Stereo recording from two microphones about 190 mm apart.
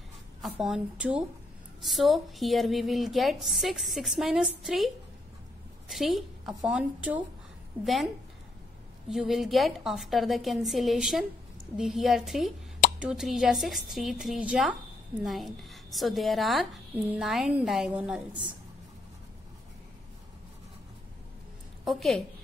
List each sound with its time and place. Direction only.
0.4 s a woman's voice: centre (ahead or behind)
9.1 s a woman's voice: centre (ahead or behind)
21.8 s a woman's voice: centre (ahead or behind)